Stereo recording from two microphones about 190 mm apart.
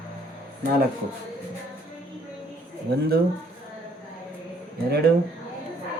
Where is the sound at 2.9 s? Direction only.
60° right (ahead or behind).